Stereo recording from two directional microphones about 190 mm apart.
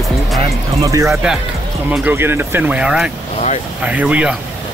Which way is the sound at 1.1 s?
5° right (ahead or behind).